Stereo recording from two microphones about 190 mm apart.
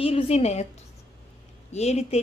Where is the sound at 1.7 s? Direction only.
35° left (ahead or behind).